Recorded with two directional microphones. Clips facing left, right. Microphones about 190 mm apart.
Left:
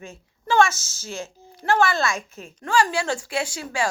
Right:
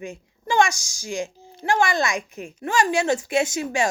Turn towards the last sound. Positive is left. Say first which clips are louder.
# right 5 dB
turn(degrees=-20)  # may be behind; listen again after turning